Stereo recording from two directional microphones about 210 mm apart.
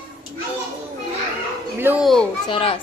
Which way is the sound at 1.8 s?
5° right (ahead or behind).